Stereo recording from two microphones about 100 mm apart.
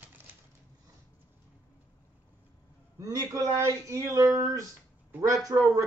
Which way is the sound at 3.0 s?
35° right (ahead or behind).